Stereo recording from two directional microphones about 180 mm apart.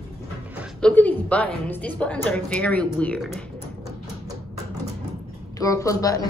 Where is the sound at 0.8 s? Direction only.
10° left (ahead or behind).